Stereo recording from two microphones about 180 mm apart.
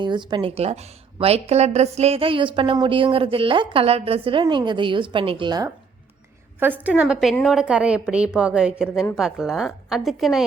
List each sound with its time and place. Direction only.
0.0 s a woman's voice: 25° right (ahead or behind)
6.6 s a woman's voice: 10° right (ahead or behind)